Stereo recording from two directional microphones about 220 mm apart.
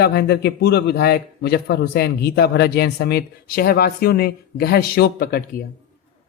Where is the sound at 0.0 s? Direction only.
50° left (ahead or behind).